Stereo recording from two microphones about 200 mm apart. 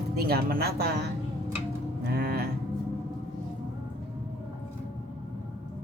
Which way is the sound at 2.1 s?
50° right (ahead or behind).